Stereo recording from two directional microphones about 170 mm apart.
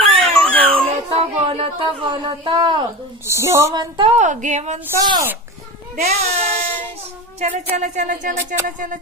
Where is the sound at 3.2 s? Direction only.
15° right (ahead or behind).